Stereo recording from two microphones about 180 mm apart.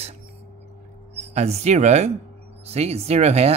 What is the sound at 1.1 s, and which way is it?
Speech, 35° right (ahead or behind).